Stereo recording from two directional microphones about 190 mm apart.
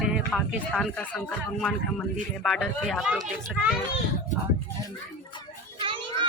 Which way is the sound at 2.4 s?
Centre (ahead or behind).